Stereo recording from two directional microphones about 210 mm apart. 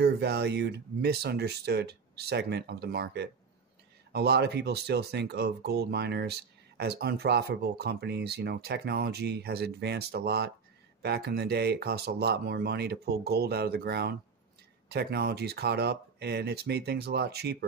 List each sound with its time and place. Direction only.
0.0 s speech: 50° right (ahead or behind)